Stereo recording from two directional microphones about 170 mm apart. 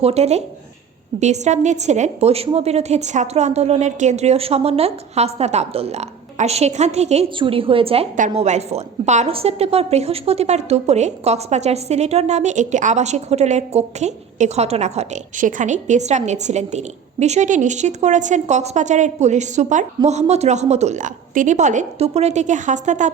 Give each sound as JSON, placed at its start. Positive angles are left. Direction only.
{"t": 0.0, "sound": "a woman's voice", "side_deg": -40}
{"t": 8.1, "sound": "a woman's voice", "side_deg": -45}